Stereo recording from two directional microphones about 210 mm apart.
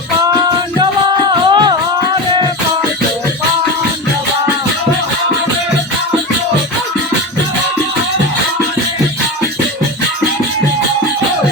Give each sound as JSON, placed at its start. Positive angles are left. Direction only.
{"t": 1.5, "sound": "music", "side_deg": -20}